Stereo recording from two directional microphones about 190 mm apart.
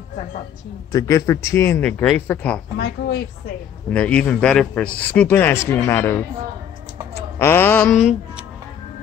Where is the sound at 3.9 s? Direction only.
5° left (ahead or behind).